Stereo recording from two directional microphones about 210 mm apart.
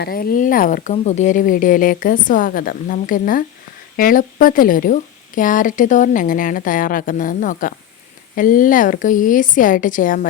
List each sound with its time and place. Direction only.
0.0 s a woman's voice: 45° left (ahead or behind)